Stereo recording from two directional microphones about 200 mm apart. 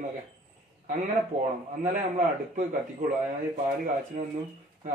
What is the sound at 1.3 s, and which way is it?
Speech, 35° right (ahead or behind).